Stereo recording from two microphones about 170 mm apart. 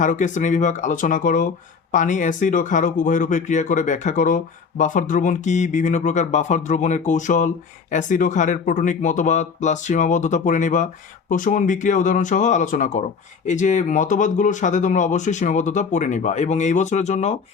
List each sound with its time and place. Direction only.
0.0 s speech: 50° left (ahead or behind)